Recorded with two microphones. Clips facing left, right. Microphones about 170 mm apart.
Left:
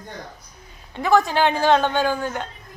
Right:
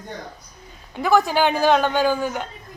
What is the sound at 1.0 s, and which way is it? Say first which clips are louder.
A woman's voice: even; centre (ahead or behind).